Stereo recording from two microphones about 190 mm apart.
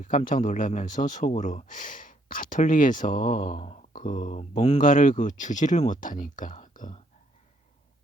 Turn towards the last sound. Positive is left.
turn(degrees=45)  # may be behind; listen again after turning